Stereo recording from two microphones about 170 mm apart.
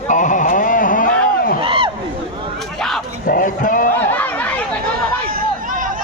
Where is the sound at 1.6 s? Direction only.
30° right (ahead or behind).